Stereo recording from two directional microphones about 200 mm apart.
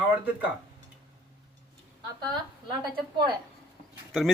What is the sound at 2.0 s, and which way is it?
Speech, 20° right (ahead or behind).